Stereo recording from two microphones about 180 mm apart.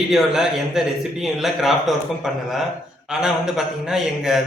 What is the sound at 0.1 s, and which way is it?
Speech, centre (ahead or behind).